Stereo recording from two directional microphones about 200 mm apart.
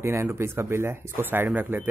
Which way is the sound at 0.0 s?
15° right (ahead or behind).